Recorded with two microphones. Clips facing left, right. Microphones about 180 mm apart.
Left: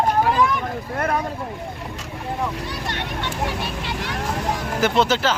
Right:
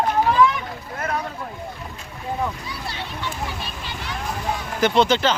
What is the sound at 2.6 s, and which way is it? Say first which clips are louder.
Vehicle: left 4 dB; 75° left (ahead or behind).